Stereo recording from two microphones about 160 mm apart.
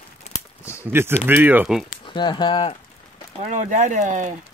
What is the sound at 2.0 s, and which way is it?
Speech, 30° left (ahead or behind).